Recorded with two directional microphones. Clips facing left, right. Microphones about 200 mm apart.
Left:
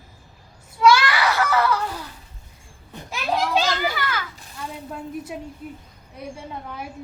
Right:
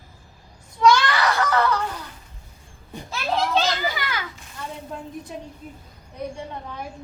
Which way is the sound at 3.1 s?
15° left (ahead or behind).